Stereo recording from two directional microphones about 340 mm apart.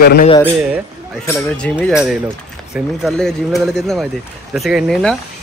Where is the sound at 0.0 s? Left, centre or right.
Left.